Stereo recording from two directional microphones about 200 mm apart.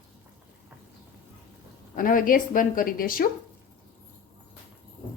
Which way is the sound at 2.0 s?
40° left (ahead or behind).